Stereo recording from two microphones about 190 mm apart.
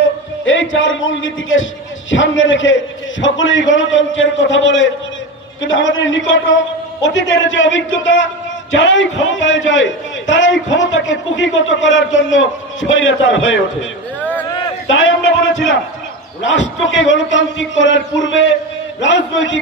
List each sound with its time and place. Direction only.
0.5 s a man's voice: 85° left
14.9 s a man's voice: 90° left
16.4 s a man's voice: 80° left